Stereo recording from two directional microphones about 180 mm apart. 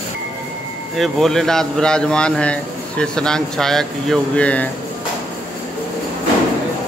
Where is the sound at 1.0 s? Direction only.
Centre (ahead or behind).